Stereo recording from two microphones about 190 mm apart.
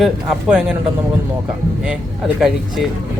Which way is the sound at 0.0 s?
5° right (ahead or behind).